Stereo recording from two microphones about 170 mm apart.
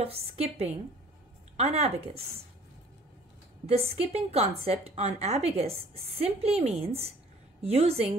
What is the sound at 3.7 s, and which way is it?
A woman's voice, 35° right (ahead or behind).